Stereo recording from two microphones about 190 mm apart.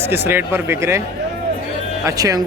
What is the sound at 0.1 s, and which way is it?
Speech, 10° right (ahead or behind).